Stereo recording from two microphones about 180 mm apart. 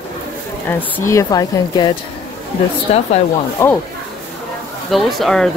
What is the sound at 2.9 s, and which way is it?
Speech, 35° left (ahead or behind).